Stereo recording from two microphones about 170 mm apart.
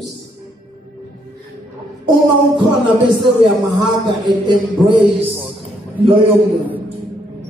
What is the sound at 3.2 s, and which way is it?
Speech, 25° right (ahead or behind).